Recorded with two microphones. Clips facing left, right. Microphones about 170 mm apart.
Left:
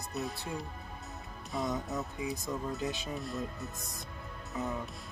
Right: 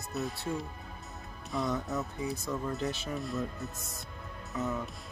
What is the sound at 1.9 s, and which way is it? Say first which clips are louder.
Speech: right 2 dB; 15° left (ahead or behind).